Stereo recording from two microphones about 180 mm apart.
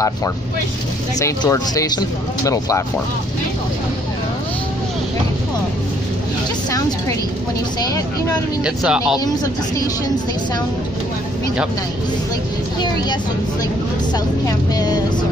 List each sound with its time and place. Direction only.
1.2 s speech: 20° left (ahead or behind)
8.6 s speech: 5° right (ahead or behind)